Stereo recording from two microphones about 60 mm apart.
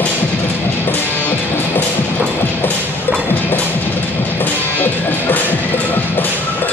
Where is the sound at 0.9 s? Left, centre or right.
Left.